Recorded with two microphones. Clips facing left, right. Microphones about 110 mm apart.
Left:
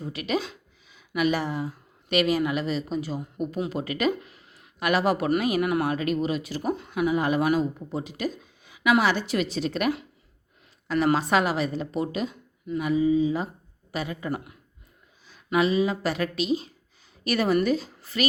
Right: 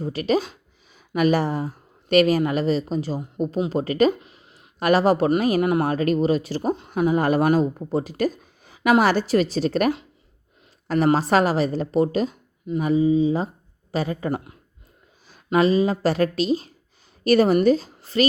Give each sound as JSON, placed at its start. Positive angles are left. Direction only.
{"t": 0.0, "sound": "speech", "side_deg": -35}
{"t": 4.2, "sound": "a sound", "side_deg": -20}
{"t": 4.8, "sound": "speech", "side_deg": -35}
{"t": 15.3, "sound": "speech", "side_deg": -40}